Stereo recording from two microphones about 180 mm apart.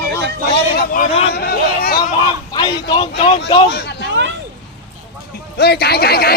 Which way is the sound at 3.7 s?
65° left (ahead or behind).